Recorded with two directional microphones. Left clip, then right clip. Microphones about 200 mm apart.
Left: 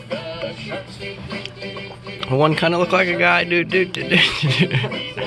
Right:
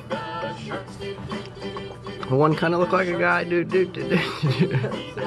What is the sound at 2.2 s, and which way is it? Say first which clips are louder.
Speech: left 3 dB; centre (ahead or behind).